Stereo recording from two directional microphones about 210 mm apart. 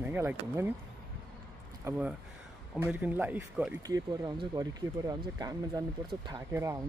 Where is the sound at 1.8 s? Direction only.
5° right (ahead or behind).